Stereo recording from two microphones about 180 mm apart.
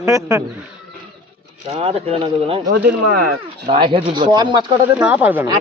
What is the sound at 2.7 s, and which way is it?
Speech, 60° right (ahead or behind).